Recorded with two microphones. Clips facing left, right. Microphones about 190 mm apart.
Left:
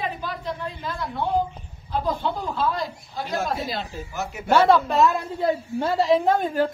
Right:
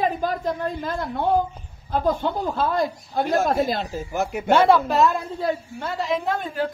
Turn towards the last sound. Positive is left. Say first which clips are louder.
# left 5 dB
turn(degrees=40)  # may be behind; listen again after turning